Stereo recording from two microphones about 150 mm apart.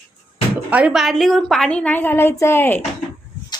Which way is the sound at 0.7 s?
10° right (ahead or behind).